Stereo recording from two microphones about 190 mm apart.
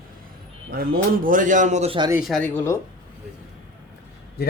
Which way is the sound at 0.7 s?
50° right (ahead or behind).